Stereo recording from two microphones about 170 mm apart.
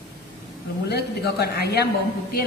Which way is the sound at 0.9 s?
75° left (ahead or behind).